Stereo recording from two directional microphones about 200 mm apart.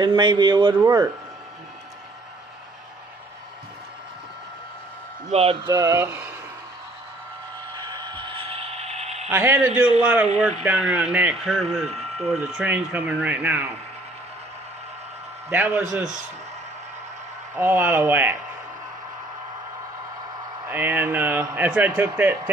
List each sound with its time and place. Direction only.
0.0 s speech: 20° right (ahead or behind)
5.3 s speech: 30° right (ahead or behind)
5.7 s speech: 15° right (ahead or behind)
7.7 s mechanisms: 20° right (ahead or behind)
9.3 s speech: 10° right (ahead or behind)
15.5 s speech: 10° right (ahead or behind)
17.6 s speech: 10° right (ahead or behind)
20.6 s speech: 10° right (ahead or behind)